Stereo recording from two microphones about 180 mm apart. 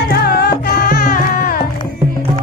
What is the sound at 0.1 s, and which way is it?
Music, 65° left (ahead or behind).